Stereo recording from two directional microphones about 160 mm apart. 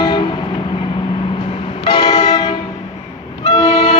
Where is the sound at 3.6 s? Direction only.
40° left (ahead or behind).